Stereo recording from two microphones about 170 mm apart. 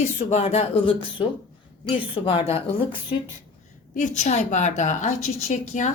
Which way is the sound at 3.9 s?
45° left (ahead or behind).